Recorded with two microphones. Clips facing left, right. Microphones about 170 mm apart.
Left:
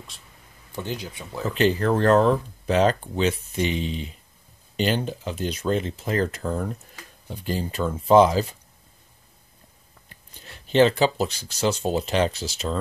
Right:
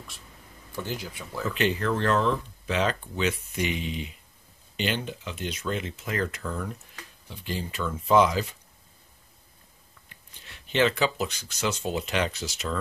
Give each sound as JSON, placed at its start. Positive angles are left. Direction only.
{"t": 0.7, "sound": "speech", "side_deg": 20}
{"t": 1.5, "sound": "speech", "side_deg": 35}
{"t": 10.0, "sound": "speech", "side_deg": 40}